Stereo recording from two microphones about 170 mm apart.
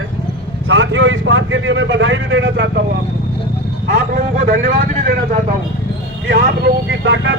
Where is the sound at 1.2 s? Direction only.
90° right.